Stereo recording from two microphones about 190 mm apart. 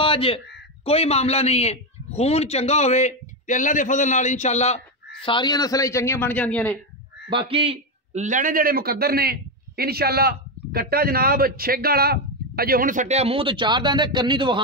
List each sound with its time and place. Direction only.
0.0 s a man's voice: 30° left (ahead or behind)
5.2 s a man's voice: 25° left (ahead or behind); by 6.8 s 5° left (ahead or behind)
7.2 s a man's voice: 25° right (ahead or behind)